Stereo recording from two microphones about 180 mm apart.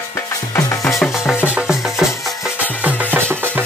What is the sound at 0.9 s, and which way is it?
Music, centre (ahead or behind).